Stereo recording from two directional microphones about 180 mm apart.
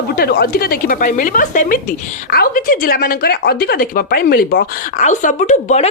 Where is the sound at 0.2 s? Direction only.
60° left (ahead or behind).